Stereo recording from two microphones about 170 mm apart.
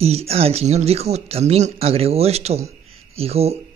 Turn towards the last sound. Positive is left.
turn(degrees=-35)  # may be behind; listen again after turning